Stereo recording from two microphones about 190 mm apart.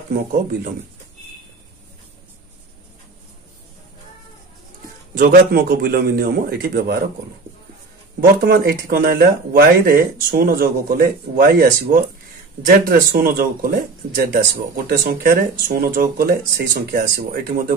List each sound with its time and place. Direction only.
5.1 s speech: 50° right (ahead or behind)
8.2 s speech: 55° right (ahead or behind)